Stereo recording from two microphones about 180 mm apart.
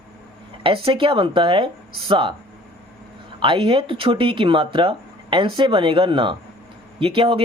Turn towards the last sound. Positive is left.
turn(degrees=-30)  # may be behind; listen again after turning